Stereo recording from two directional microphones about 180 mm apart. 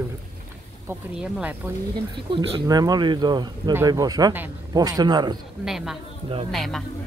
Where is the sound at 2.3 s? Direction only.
25° right (ahead or behind).